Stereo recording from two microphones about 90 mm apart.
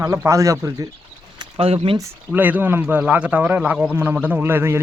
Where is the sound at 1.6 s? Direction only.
90° right.